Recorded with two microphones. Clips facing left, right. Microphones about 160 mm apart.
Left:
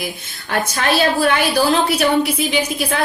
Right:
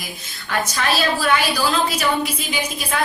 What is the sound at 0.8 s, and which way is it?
Speech, 55° left (ahead or behind).